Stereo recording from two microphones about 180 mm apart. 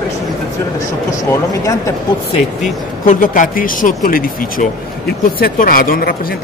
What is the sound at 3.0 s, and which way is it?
Speech, 45° left (ahead or behind).